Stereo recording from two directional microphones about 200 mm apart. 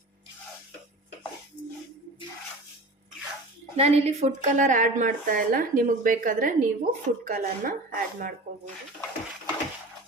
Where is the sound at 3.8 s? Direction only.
35° right (ahead or behind).